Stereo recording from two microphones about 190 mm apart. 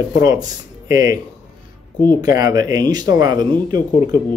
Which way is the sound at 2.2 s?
20° right (ahead or behind).